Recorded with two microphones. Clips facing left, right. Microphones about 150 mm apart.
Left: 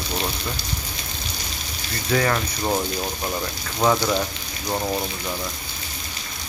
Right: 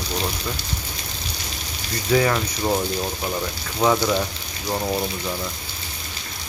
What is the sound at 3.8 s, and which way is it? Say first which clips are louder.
Speech: right 1 dB; 5° left (ahead or behind).